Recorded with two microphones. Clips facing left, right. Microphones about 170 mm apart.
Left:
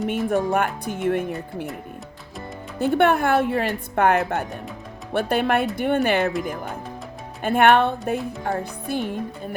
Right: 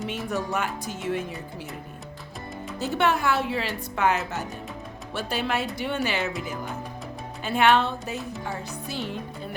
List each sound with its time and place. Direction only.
0.1 s speech: 50° left (ahead or behind)
2.7 s music: 55° left (ahead or behind)
5.1 s speech: 55° left (ahead or behind)
7.4 s music: 55° left (ahead or behind)